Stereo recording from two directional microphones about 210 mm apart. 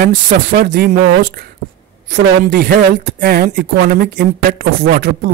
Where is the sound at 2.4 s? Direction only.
45° right (ahead or behind).